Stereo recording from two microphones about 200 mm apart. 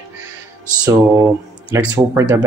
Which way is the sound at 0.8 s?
15° right (ahead or behind).